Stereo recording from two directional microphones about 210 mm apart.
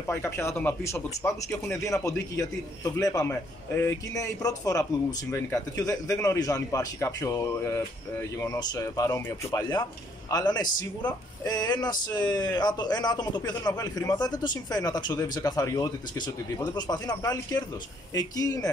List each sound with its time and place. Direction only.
0.1 s speech: 10° left (ahead or behind)